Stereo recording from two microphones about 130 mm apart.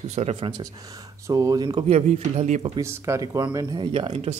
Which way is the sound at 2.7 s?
25° right (ahead or behind).